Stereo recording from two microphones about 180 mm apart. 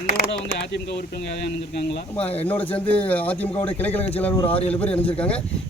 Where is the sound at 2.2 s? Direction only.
35° left (ahead or behind).